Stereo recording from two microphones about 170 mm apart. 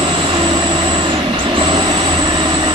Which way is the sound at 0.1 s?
30° right (ahead or behind).